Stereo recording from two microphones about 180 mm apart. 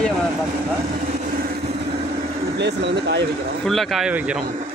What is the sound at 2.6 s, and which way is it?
Speech, 70° right (ahead or behind).